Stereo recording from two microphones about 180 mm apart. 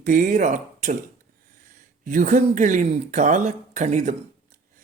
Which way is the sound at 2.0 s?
45° right (ahead or behind).